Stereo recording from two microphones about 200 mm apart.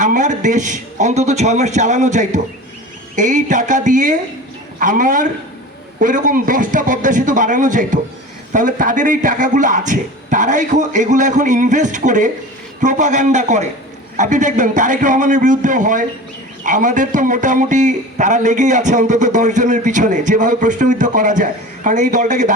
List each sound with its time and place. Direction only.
0.0 s a man's voice: 40° right (ahead or behind)